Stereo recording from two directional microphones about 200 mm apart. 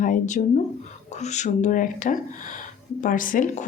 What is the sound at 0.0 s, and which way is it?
Speech, 40° left (ahead or behind).